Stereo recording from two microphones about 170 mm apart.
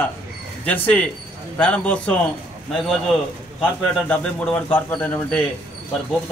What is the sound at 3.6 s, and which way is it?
A man's voice, 5° left (ahead or behind).